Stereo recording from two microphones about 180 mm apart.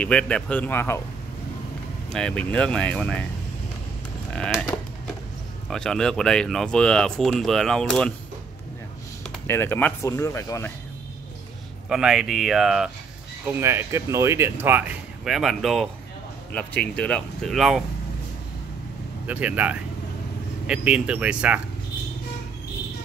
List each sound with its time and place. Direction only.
0.0 s speech: 5° left (ahead or behind)
2.1 s speech: 5° left (ahead or behind)
4.3 s speech: 5° left (ahead or behind)
5.7 s speech: 5° left (ahead or behind)
9.3 s speech: 10° left (ahead or behind)
11.9 s speech: 5° right (ahead or behind)
13.5 s speech: 15° right (ahead or behind)
19.2 s speech: 10° right (ahead or behind)